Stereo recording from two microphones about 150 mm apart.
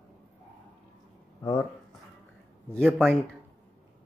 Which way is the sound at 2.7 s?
5° left (ahead or behind).